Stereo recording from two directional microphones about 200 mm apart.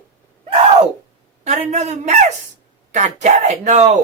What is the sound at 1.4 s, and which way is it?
Speech, 35° right (ahead or behind).